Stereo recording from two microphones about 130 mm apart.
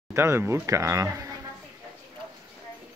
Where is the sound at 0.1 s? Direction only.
20° right (ahead or behind).